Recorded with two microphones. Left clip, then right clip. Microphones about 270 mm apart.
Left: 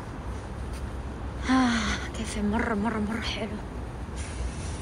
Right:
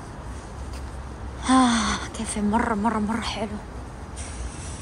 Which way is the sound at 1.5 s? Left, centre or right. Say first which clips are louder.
Right 5 dB; centre.